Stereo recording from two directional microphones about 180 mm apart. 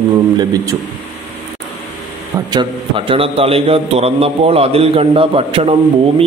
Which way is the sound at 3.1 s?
30° right (ahead or behind).